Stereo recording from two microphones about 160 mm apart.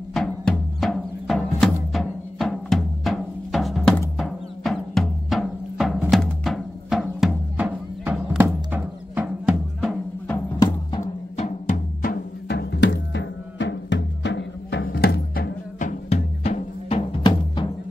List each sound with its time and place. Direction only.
0.1 s music: centre (ahead or behind)
11.0 s music: 45° left (ahead or behind); by 15.5 s 80° left
16.1 s music: 40° left (ahead or behind)